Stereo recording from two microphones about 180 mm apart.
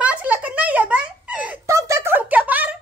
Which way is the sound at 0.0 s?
5° right (ahead or behind).